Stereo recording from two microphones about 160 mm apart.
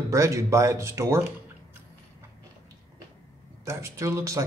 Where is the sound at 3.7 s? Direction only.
15° right (ahead or behind).